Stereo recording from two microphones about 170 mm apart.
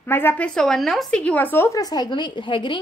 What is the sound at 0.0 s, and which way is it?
Speech, 15° left (ahead or behind).